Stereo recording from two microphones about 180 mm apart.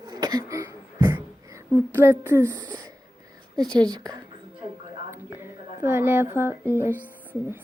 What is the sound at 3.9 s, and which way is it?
Speech, 20° right (ahead or behind).